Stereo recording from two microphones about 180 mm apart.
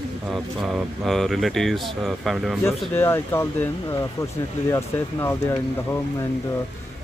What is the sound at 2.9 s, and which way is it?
Speech, 10° left (ahead or behind).